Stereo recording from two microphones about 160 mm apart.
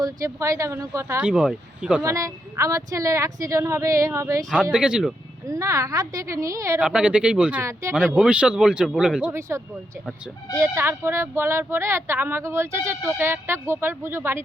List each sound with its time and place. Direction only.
0.0 s a woman's voice: 20° right (ahead or behind)
1.3 s speech: 5° right (ahead or behind)
2.0 s a woman's voice: 20° right (ahead or behind)
4.7 s speech: 5° right (ahead or behind)
5.5 s a woman's voice: 20° right (ahead or behind)
6.7 s speech: 5° right (ahead or behind)
7.6 s speech: 15° right (ahead or behind)
8.1 s speech: 5° right (ahead or behind)
10.5 s speech: 15° right (ahead or behind)